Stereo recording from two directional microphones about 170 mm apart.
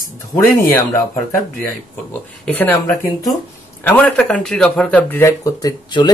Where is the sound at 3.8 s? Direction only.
10° left (ahead or behind).